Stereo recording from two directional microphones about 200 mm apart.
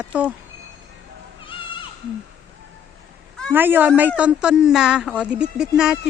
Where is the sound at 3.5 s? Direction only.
10° right (ahead or behind).